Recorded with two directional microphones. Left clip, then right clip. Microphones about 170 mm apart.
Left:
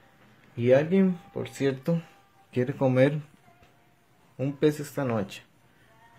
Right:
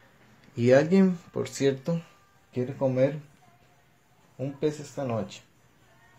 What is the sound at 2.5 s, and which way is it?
Speech, 40° left (ahead or behind).